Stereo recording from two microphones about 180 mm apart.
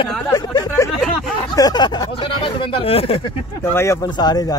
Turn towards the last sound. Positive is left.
turn(degrees=20)  # may be behind; listen again after turning